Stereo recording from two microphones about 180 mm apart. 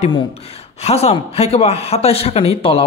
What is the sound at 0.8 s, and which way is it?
A man's voice, 35° left (ahead or behind).